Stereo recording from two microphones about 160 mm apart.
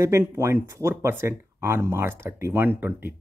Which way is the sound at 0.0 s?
15° right (ahead or behind).